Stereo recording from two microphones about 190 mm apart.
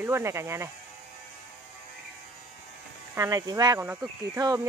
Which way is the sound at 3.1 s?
15° right (ahead or behind).